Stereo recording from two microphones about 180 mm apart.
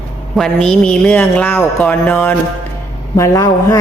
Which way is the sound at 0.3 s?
5° left (ahead or behind).